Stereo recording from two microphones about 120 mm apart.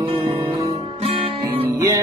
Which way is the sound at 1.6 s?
30° right (ahead or behind).